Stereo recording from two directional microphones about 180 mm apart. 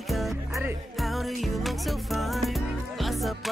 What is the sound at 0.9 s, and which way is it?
Music, centre (ahead or behind).